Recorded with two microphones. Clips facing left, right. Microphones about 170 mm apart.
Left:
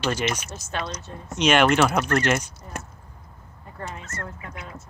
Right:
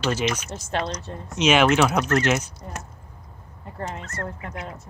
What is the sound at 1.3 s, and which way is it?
Speech, 5° right (ahead or behind).